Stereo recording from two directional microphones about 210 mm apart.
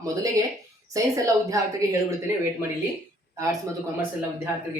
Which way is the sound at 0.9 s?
15° right (ahead or behind).